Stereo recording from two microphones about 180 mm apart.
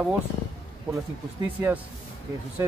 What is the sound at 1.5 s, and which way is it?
Speech, 10° right (ahead or behind).